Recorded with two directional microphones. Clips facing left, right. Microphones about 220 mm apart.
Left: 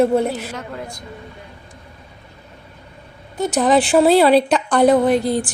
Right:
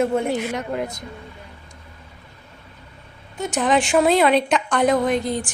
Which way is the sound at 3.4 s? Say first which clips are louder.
Left 4 dB; 35° left (ahead or behind).